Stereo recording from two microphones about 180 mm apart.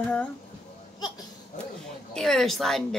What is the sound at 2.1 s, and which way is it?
Speech, centre (ahead or behind).